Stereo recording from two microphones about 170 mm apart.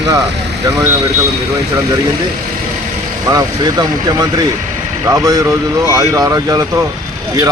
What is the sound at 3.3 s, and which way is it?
Speech, 20° right (ahead or behind).